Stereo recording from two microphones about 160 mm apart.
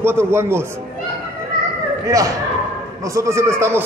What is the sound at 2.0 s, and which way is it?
A man's voice, 20° right (ahead or behind).